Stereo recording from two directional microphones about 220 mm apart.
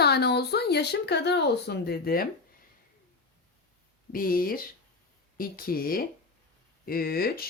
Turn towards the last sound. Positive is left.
turn(degrees=45)  # may be behind; listen again after turning